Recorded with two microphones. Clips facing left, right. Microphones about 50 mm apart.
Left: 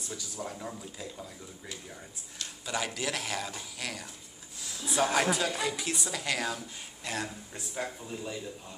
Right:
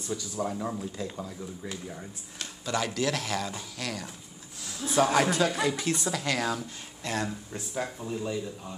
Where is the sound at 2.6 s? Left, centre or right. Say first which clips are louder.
Right 5 dB; centre.